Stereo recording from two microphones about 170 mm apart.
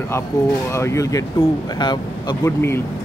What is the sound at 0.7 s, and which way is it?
Speech, 15° left (ahead or behind).